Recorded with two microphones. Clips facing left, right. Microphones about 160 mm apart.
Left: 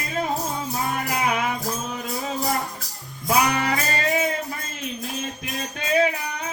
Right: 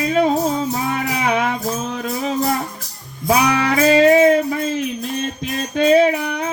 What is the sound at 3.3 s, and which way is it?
Music, 80° right.